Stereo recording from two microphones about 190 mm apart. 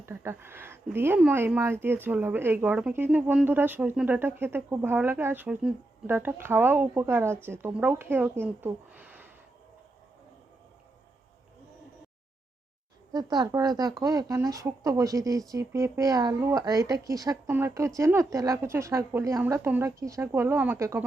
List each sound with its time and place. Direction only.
0.0 s speech: 15° right (ahead or behind)
13.1 s speech: 20° right (ahead or behind)